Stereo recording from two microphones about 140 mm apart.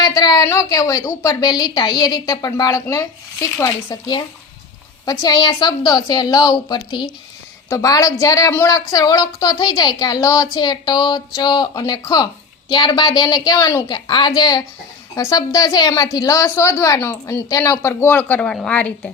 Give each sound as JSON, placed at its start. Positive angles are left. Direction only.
{"t": 0.0, "sound": "a woman's voice", "side_deg": 30}